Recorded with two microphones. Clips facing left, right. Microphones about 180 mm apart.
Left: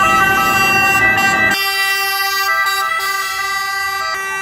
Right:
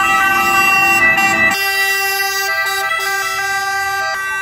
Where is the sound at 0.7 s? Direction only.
15° right (ahead or behind).